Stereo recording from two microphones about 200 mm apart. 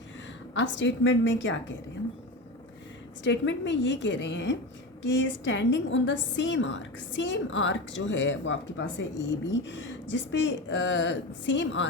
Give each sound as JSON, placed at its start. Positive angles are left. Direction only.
{"t": 0.5, "sound": "a woman's voice", "side_deg": 65}
{"t": 3.2, "sound": "a woman's voice", "side_deg": 65}